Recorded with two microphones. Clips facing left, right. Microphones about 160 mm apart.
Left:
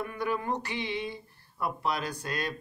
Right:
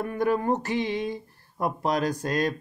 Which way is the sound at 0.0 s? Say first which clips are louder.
Right 7 dB; 45° right (ahead or behind).